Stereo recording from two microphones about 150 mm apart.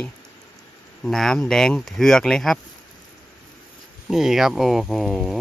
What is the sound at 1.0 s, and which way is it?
Speech, 5° left (ahead or behind).